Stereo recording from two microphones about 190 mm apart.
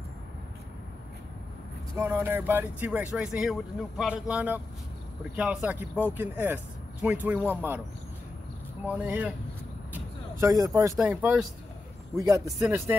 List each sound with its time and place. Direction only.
2.0 s speech: 10° right (ahead or behind)
8.8 s speech: 10° right (ahead or behind)
9.9 s vehicle: 15° right (ahead or behind)
11.0 s speech: 5° right (ahead or behind)
12.4 s speech: centre (ahead or behind)